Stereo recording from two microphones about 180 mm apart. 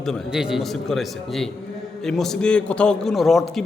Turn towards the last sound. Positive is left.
turn(degrees=0)  # may be behind; listen again after turning